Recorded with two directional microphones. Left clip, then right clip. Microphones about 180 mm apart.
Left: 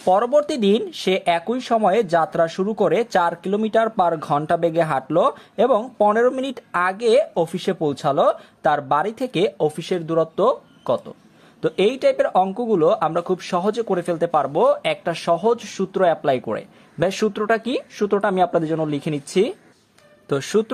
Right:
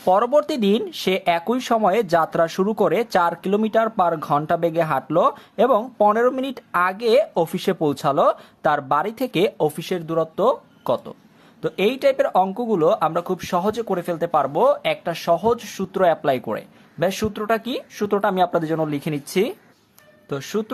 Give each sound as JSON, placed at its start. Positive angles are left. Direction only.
{"t": 0.0, "sound": "speech", "side_deg": 0}
{"t": 10.8, "sound": "speech", "side_deg": 0}
{"t": 11.6, "sound": "speech", "side_deg": 10}
{"t": 20.2, "sound": "speech", "side_deg": 20}